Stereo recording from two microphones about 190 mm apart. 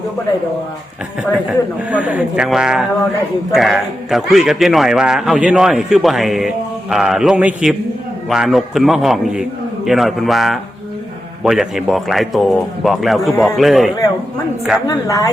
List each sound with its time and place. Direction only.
1.9 s speech: 5° right (ahead or behind)
14.8 s a woman's voice: 15° left (ahead or behind)